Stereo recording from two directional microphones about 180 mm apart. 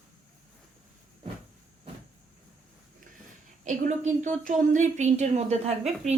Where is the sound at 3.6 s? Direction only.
45° right (ahead or behind).